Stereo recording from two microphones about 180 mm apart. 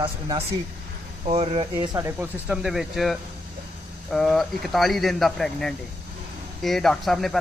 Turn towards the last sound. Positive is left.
turn(degrees=0)  # may be behind; listen again after turning